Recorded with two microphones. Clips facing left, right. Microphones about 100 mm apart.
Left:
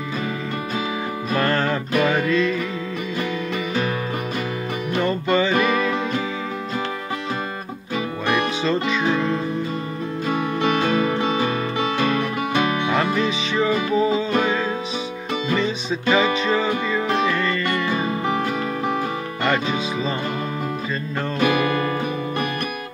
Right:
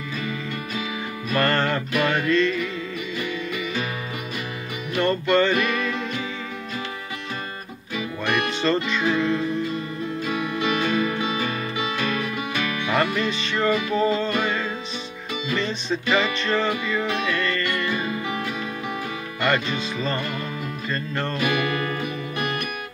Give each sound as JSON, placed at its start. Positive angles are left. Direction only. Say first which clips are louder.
{"t": 1.3, "sound": "music", "louder": "even", "side_deg": 0}
{"t": 5.0, "sound": "music", "louder": "right 1 dB", "side_deg": 5}
{"t": 8.6, "sound": "music", "louder": "right 1 dB", "side_deg": 5}
{"t": 10.2, "sound": "music", "louder": "left 5 dB", "side_deg": 40}
{"t": 12.9, "sound": "music", "louder": "left 2 dB", "side_deg": 0}
{"t": 17.9, "sound": "music", "louder": "left 5 dB", "side_deg": 40}
{"t": 19.4, "sound": "music", "louder": "left 1 dB", "side_deg": 5}
{"t": 21.4, "sound": "music", "louder": "left 6 dB", "side_deg": 40}